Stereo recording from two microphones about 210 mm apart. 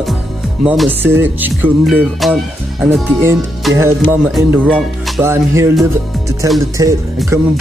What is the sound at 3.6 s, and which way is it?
Speech, centre (ahead or behind).